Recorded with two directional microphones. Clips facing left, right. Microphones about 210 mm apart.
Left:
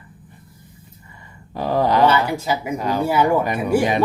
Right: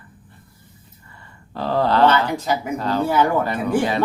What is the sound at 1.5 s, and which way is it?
Speech, 15° left (ahead or behind).